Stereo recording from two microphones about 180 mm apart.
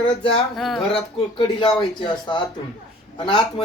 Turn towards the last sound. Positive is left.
turn(degrees=25)  # may be behind; listen again after turning